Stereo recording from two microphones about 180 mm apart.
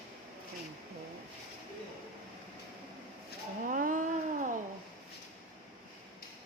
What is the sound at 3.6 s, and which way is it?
Cat, 50° right (ahead or behind).